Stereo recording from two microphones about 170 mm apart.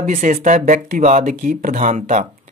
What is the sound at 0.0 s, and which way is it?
Speech, 50° right (ahead or behind).